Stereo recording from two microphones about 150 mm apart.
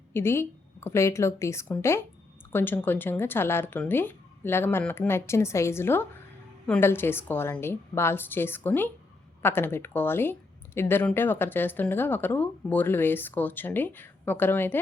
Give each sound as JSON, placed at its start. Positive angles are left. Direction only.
{"t": 0.1, "sound": "speech", "side_deg": 15}